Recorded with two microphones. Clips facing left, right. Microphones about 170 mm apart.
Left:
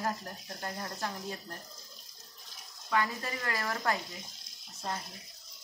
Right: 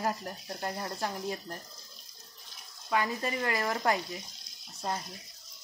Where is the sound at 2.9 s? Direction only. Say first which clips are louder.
Right 2 dB; 15° right (ahead or behind).